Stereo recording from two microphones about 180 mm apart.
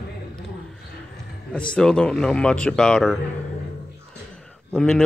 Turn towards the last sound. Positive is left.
turn(degrees=5)  # may be behind; listen again after turning